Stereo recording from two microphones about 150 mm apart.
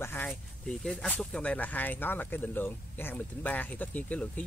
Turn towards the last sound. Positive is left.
turn(degrees=10)  # may be behind; listen again after turning